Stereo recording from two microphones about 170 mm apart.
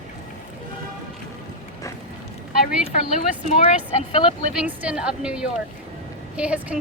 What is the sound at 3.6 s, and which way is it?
Speech, 30° left (ahead or behind).